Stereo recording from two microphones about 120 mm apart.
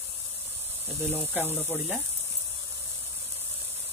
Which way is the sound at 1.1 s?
15° left (ahead or behind).